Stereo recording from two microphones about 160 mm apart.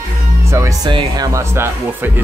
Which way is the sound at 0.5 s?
20° right (ahead or behind).